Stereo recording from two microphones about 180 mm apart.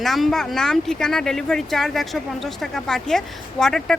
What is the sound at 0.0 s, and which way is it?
Speech, centre (ahead or behind).